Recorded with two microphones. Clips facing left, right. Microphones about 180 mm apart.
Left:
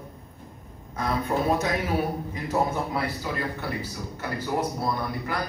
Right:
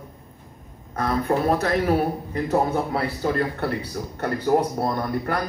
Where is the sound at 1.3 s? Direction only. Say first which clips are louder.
Right 4 dB; 55° right (ahead or behind).